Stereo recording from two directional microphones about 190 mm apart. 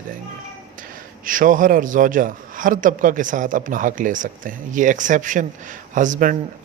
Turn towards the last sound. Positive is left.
turn(degrees=-40)  # may be behind; listen again after turning